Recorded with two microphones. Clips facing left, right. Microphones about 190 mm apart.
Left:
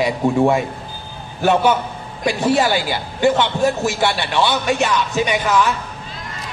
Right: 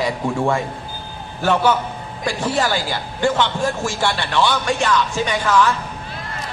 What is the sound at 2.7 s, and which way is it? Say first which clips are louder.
Speech: left 3 dB; 20° left (ahead or behind).